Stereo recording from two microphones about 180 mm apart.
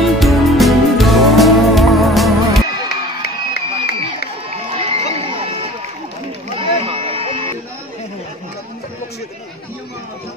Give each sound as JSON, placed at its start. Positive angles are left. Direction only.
{"t": 0.0, "sound": "music", "side_deg": 0}
{"t": 2.9, "sound": "crowd", "side_deg": 60}
{"t": 4.5, "sound": "run", "side_deg": -35}
{"t": 6.5, "sound": "run", "side_deg": -30}